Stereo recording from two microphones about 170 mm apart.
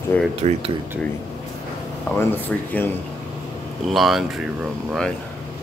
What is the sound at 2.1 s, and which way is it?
Speech, 10° left (ahead or behind).